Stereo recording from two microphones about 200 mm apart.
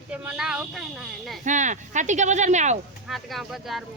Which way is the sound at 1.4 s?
40° right (ahead or behind).